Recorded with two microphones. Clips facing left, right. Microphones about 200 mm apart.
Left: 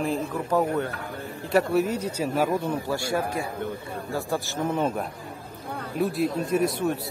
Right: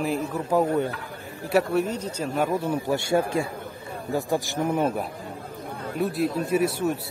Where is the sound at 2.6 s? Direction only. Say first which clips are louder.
Right 2 dB; 20° right (ahead or behind).